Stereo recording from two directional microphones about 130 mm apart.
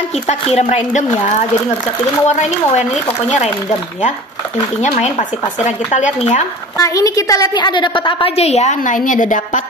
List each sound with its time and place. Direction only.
0.3 s speech: 55° left (ahead or behind)
5.7 s speech: 60° left (ahead or behind)
6.8 s a woman's voice: 25° left (ahead or behind); by 9.6 s 85° left